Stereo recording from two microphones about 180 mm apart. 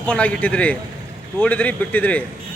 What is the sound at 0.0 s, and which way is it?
Speech, 10° left (ahead or behind).